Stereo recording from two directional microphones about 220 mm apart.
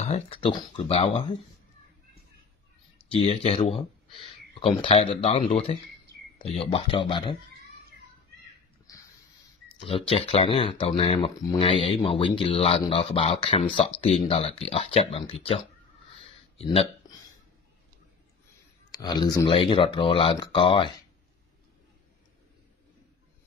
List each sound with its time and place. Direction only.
0.0 s speech: 25° left (ahead or behind)
3.1 s speech: 30° left (ahead or behind)
9.7 s speech: 25° left (ahead or behind)
18.9 s speech: 20° left (ahead or behind)